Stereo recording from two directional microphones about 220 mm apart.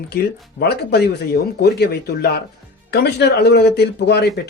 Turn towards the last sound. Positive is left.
turn(degrees=50)  # may be behind; listen again after turning